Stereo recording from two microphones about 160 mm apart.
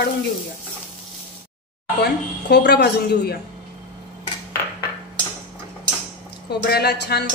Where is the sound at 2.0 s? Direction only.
90° left.